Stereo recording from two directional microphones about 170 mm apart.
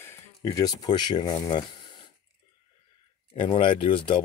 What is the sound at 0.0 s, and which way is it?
Speech, 15° left (ahead or behind).